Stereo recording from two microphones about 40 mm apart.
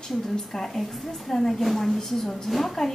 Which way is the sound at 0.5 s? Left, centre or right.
Centre.